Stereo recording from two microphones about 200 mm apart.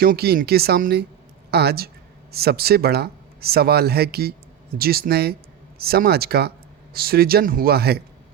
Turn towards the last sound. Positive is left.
turn(degrees=-50)  # may be behind; listen again after turning